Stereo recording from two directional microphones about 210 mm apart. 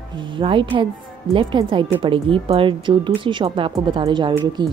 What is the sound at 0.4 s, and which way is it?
A woman's voice, 25° right (ahead or behind).